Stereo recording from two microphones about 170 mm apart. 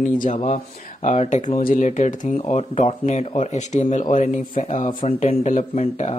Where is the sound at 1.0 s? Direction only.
40° left (ahead or behind).